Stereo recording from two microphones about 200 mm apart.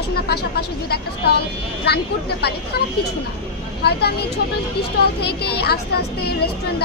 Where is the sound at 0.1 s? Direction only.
50° left (ahead or behind).